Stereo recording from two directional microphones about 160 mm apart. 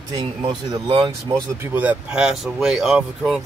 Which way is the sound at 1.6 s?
10° right (ahead or behind).